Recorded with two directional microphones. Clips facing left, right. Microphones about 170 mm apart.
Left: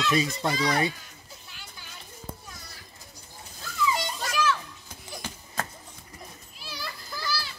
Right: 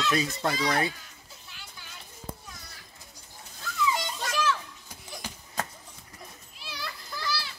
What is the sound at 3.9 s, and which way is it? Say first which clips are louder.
Children playing: left 1 dB; centre (ahead or behind).